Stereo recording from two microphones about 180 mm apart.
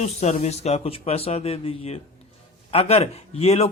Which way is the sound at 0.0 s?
40° left (ahead or behind).